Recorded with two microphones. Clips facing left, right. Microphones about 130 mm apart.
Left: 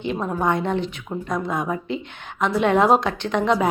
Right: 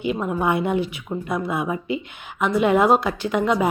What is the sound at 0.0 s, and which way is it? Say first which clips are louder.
A woman's voice: right 1 dB; 5° right (ahead or behind).